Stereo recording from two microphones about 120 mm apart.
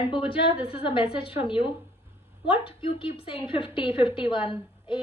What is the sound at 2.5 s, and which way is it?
A woman's voice, 45° left (ahead or behind).